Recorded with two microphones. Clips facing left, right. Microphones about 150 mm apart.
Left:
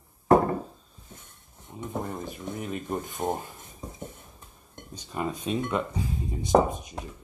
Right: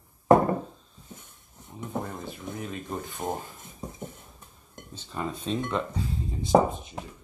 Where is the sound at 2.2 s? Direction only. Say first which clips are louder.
Left 2 dB; 15° left (ahead or behind).